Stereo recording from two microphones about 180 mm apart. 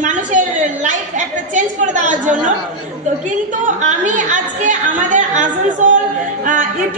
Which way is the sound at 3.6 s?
45° right (ahead or behind).